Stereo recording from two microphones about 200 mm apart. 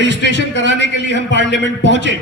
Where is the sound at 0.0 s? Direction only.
60° left (ahead or behind).